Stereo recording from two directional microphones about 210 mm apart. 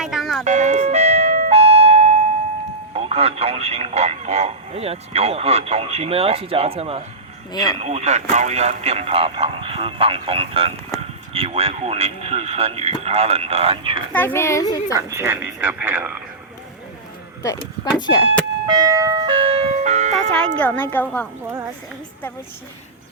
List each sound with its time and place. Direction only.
0.0 s music: centre (ahead or behind)
0.4 s doorbell: 35° right (ahead or behind)
2.9 s speech: 30° right (ahead or behind)
7.5 s speech: 20° left (ahead or behind)
7.8 s speech: 30° right (ahead or behind)
14.1 s a child's voice: 10° left (ahead or behind)
14.9 s speech: 10° right (ahead or behind)
18.6 s speech: 20° right (ahead or behind)
20.6 s a child's voice: 10° left (ahead or behind)
21.4 s speech: 10° right (ahead or behind)